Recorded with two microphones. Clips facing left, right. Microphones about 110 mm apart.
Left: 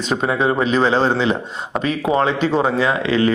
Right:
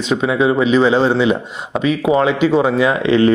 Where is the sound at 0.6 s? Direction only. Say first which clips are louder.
Right 4 dB; 40° left (ahead or behind).